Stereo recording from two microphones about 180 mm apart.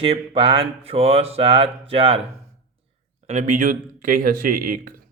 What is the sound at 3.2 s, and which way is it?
Speech, 45° right (ahead or behind).